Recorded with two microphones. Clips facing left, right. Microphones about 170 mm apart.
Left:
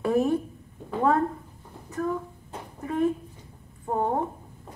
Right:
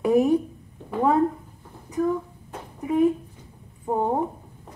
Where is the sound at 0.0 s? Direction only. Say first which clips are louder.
Right 4 dB; 15° right (ahead or behind).